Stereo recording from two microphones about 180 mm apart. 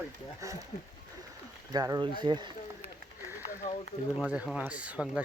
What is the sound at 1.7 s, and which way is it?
Speech, 20° right (ahead or behind).